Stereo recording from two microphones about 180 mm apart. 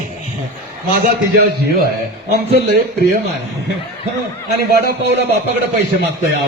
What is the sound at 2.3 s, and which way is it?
Speech, 60° right (ahead or behind).